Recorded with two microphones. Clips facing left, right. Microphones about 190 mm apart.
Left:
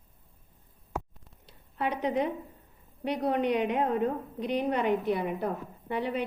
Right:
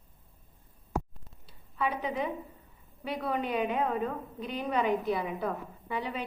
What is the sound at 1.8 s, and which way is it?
Speech, 75° left (ahead or behind).